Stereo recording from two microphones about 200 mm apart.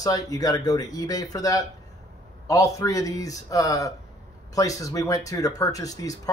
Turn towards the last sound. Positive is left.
turn(degrees=15)  # may be behind; listen again after turning